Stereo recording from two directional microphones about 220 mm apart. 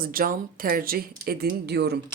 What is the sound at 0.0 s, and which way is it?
Speech, 40° right (ahead or behind).